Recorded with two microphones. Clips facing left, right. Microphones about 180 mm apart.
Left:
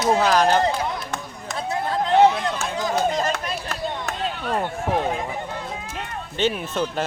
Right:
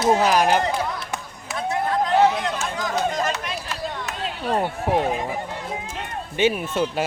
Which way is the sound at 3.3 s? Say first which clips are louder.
Left 2 dB; 55° left (ahead or behind).